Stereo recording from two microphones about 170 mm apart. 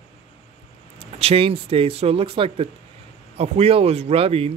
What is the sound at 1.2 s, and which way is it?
Speech, 35° right (ahead or behind).